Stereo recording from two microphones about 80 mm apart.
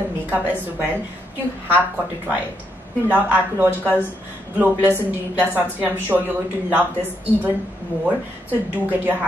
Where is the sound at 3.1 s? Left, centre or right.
Right.